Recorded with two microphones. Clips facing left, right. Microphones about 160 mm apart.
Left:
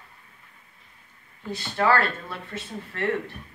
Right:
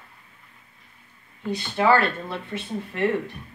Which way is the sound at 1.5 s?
15° right (ahead or behind).